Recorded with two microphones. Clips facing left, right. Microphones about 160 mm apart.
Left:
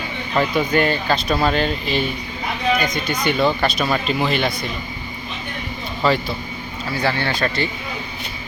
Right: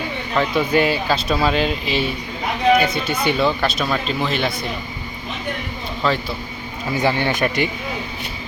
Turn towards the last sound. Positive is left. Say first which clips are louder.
# right 2 dB
turn(degrees=-15)  # may be behind; listen again after turning